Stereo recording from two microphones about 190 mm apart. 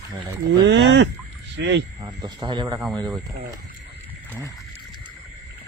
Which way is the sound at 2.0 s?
25° right (ahead or behind).